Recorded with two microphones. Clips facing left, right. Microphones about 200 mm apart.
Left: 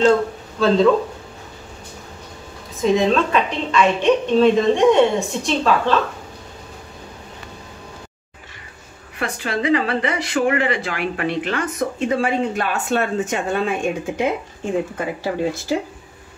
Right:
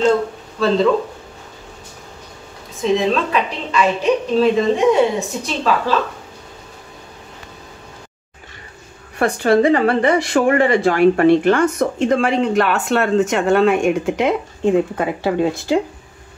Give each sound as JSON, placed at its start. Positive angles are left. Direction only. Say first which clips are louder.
{"t": 0.6, "sound": "a woman's voice", "louder": "even", "side_deg": 0}
{"t": 2.8, "sound": "a woman's voice", "louder": "even", "side_deg": 0}
{"t": 9.2, "sound": "speech", "louder": "right 9 dB", "side_deg": -45}
{"t": 12.1, "sound": "speech", "louder": "right 2 dB", "side_deg": -75}